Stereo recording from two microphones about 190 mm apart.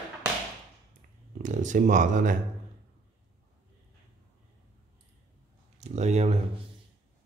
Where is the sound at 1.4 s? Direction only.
40° right (ahead or behind).